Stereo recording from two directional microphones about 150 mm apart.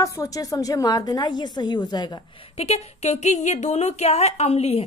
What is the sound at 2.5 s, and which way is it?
Speech, 45° left (ahead or behind).